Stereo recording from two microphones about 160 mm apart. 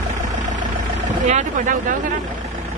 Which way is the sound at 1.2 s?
50° right (ahead or behind).